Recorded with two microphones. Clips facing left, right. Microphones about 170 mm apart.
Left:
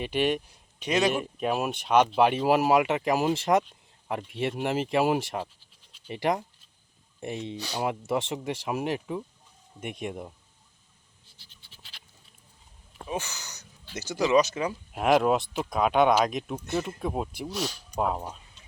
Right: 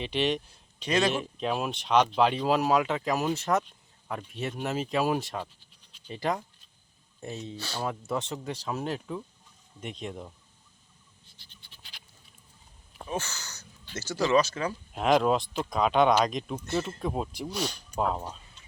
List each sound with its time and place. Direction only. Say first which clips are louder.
0.0 s a man's voice: left 2 dB; 10° left (ahead or behind)
1.2 s speech: left 2 dB; 5° left (ahead or behind)
7.5 s speech: left 3 dB; 15° left (ahead or behind)
11.6 s scratch: even; centre (ahead or behind)
13.1 s speech: left 1 dB; 15° left (ahead or behind)
14.9 s speech: left 1 dB; 5° left (ahead or behind)